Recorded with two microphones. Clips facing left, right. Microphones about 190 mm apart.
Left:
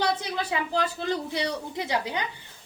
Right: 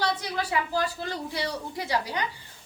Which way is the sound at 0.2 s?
20° left (ahead or behind).